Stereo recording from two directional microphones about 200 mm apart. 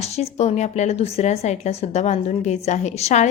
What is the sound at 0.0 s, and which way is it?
Speech, 30° left (ahead or behind).